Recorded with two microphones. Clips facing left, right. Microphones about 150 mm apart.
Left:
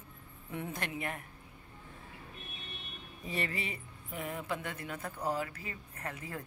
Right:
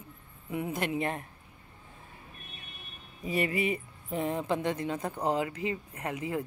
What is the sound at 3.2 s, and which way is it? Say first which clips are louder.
Speech: right 8 dB; 15° right (ahead or behind).